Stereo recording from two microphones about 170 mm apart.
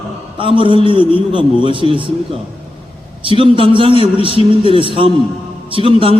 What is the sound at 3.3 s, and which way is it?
A man's voice, 30° right (ahead or behind).